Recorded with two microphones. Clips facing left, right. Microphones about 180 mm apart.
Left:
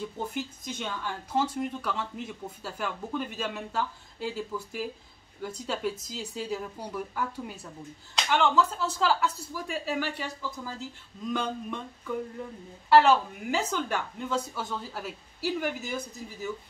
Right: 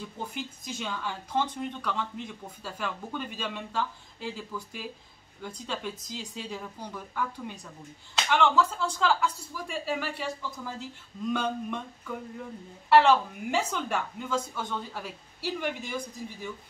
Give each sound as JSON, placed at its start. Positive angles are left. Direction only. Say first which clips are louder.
{"t": 0.2, "sound": "speech", "louder": "left 3 dB", "side_deg": 0}
{"t": 11.3, "sound": "speech", "louder": "even", "side_deg": 0}
{"t": 12.9, "sound": "speech", "louder": "even", "side_deg": 0}